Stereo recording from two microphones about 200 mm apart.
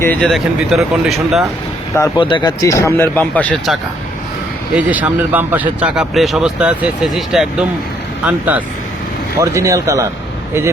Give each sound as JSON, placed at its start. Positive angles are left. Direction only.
{"t": 0.0, "sound": "speech", "side_deg": 5}
{"t": 2.0, "sound": "speech", "side_deg": 25}
{"t": 4.7, "sound": "speech", "side_deg": -5}